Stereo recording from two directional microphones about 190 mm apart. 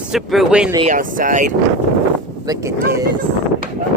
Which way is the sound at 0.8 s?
45° right (ahead or behind).